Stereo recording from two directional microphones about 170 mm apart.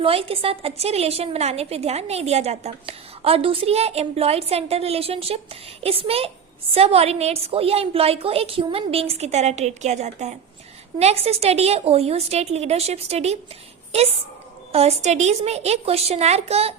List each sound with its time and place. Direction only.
0.0 s a woman's voice: 35° right (ahead or behind)